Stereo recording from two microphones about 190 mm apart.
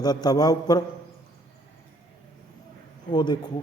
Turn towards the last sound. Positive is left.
turn(degrees=20)  # may be behind; listen again after turning